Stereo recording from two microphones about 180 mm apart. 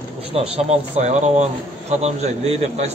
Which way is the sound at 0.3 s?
35° right (ahead or behind).